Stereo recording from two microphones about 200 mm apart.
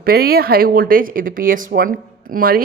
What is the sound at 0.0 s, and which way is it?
Speech, 50° right (ahead or behind).